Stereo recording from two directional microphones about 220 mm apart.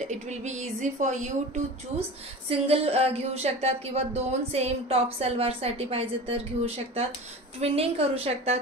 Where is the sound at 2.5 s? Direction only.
25° right (ahead or behind).